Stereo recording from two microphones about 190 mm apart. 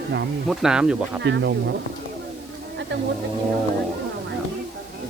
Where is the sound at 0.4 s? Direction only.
5° right (ahead or behind).